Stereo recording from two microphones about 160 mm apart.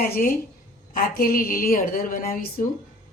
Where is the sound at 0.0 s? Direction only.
60° left (ahead or behind).